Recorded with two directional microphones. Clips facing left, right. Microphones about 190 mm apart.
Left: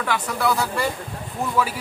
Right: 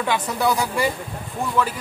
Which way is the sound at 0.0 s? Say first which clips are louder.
Right 2 dB; 20° right (ahead or behind).